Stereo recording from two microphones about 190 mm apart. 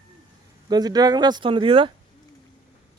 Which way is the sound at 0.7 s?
20° right (ahead or behind).